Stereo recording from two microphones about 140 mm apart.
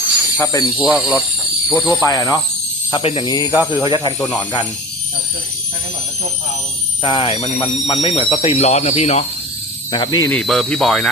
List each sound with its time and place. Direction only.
0.3 s speech: 15° left (ahead or behind)
0.8 s speech: 10° right (ahead or behind)
2.0 s speech: 25° left (ahead or behind)
2.9 s speech: 45° left (ahead or behind)
3.2 s speech: 25° left (ahead or behind)
7.0 s speech: 40° left (ahead or behind)
9.9 s speech: 30° left (ahead or behind)
10.2 s speech: 5° left (ahead or behind)